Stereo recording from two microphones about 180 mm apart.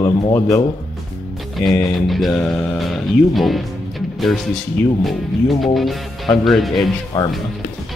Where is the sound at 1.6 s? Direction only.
Centre (ahead or behind).